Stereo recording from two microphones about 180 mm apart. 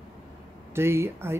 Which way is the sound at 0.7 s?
15° right (ahead or behind).